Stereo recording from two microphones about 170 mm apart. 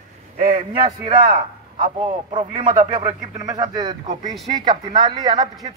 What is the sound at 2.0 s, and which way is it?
A man's voice, 30° right (ahead or behind).